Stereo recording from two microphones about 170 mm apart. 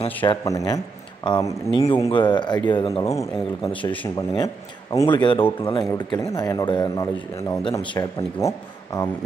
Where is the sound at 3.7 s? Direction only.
25° left (ahead or behind).